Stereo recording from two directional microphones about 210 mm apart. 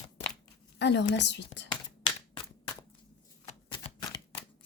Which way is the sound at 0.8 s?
55° left (ahead or behind).